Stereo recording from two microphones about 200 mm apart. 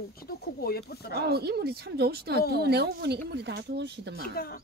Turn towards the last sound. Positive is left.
turn(degrees=50)  # may be behind; listen again after turning